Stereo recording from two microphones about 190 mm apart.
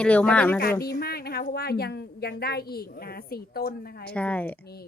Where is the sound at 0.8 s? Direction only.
55° left (ahead or behind).